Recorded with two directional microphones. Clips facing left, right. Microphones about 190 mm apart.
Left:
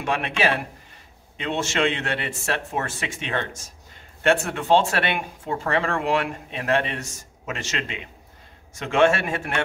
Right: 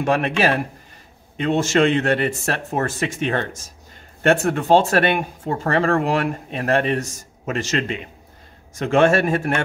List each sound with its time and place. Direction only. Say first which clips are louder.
0.0 s speech: right 7 dB; 40° right (ahead or behind)
1.3 s speech: right 8 dB; 45° right (ahead or behind)